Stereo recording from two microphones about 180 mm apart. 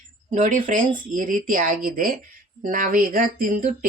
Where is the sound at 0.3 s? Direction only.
45° right (ahead or behind).